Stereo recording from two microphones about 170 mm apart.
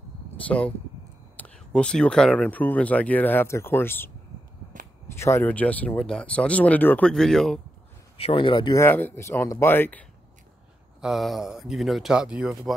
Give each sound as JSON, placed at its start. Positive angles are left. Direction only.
{"t": 0.4, "sound": "speech", "side_deg": 10}
{"t": 5.1, "sound": "speech", "side_deg": 15}
{"t": 8.2, "sound": "speech", "side_deg": 30}
{"t": 8.8, "sound": "speech", "side_deg": 10}
{"t": 11.0, "sound": "speech", "side_deg": 0}